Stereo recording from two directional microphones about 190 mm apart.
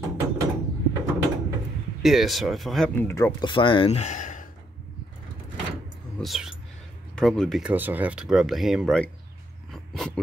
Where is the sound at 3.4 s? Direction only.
25° left (ahead or behind); by 4.4 s 40° left (ahead or behind).